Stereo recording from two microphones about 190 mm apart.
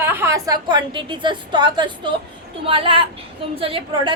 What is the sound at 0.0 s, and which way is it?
A woman's voice, 10° right (ahead or behind).